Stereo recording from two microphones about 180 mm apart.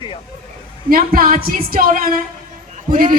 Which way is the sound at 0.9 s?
50° right (ahead or behind).